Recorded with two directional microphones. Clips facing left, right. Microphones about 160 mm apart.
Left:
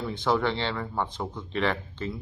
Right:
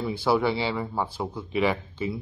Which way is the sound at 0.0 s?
10° right (ahead or behind).